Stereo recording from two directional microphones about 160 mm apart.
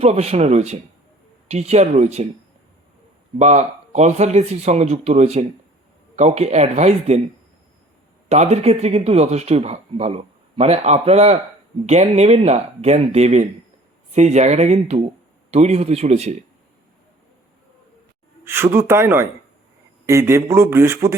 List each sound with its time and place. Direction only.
0.0 s speech: 40° right (ahead or behind)
3.3 s speech: 45° right (ahead or behind)
8.3 s speech: 45° right (ahead or behind)
18.4 s a man's voice: 15° right (ahead or behind)